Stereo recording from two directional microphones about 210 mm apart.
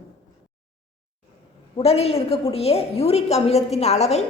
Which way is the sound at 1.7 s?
30° left (ahead or behind).